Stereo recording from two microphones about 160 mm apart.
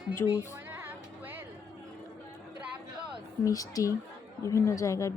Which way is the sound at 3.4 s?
20° left (ahead or behind).